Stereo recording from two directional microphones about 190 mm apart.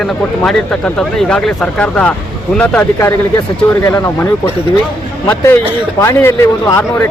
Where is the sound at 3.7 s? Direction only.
15° left (ahead or behind).